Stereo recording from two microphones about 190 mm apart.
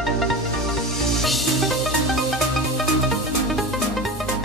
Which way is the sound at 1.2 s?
Centre (ahead or behind).